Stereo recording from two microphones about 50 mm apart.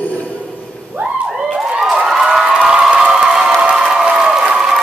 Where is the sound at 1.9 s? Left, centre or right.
Centre.